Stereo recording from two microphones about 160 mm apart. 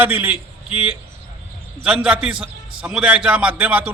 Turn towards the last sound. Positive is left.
turn(degrees=-10)  # may be behind; listen again after turning